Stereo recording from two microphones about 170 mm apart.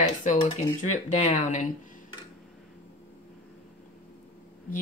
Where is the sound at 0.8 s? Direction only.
45° left (ahead or behind).